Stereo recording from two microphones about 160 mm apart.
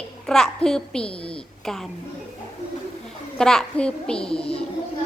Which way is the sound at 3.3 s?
5° left (ahead or behind).